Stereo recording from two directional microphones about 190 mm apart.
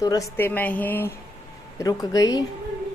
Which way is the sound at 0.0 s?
15° left (ahead or behind).